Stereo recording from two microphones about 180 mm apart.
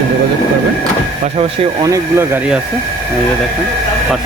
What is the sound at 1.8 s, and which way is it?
Speech, 15° right (ahead or behind).